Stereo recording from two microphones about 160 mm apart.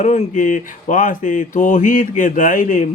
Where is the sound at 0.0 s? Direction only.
50° left (ahead or behind).